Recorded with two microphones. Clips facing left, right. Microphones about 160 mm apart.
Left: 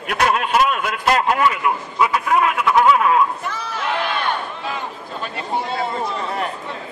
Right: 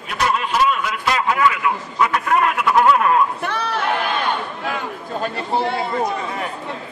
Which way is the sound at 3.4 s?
65° right (ahead or behind).